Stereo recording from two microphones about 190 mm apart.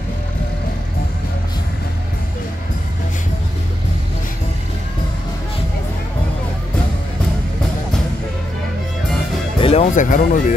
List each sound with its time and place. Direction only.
9.6 s speech: 30° left (ahead or behind)